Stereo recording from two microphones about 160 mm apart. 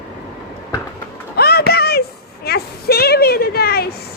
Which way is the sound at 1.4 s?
80° left.